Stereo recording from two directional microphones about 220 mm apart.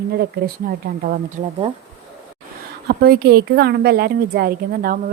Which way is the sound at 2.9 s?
45° right (ahead or behind).